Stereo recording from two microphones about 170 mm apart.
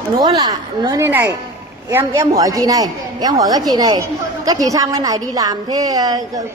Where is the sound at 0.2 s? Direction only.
20° right (ahead or behind).